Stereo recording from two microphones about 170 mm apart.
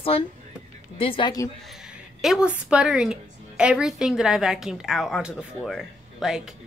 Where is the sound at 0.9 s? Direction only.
30° left (ahead or behind).